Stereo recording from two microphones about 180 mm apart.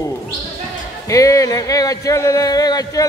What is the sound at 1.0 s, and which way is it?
Speech, 20° left (ahead or behind).